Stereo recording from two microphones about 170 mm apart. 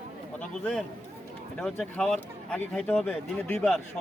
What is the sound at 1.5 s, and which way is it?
Speech, 5° left (ahead or behind).